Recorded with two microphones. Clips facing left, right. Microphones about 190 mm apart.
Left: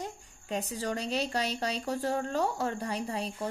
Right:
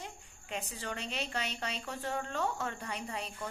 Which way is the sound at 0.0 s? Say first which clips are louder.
Left 7 dB; 40° left (ahead or behind).